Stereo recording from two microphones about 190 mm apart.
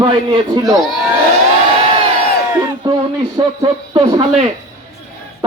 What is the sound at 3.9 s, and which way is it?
Speech, 30° right (ahead or behind).